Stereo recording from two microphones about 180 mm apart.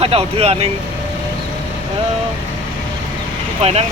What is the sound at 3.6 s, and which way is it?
Speech, 35° right (ahead or behind).